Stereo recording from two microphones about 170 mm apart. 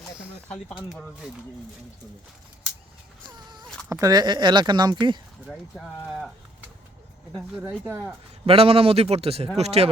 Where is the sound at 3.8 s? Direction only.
20° right (ahead or behind).